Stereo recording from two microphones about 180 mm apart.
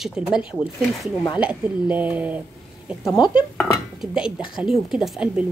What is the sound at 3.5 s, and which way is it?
Speech, centre (ahead or behind).